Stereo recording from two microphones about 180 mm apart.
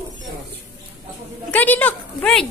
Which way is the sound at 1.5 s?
10° left (ahead or behind).